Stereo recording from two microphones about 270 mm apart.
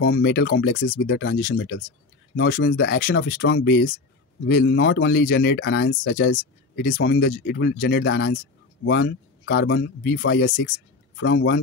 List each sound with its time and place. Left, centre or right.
0.0 s speech: left